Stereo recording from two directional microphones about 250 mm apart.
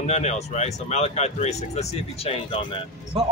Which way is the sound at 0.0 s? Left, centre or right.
Left.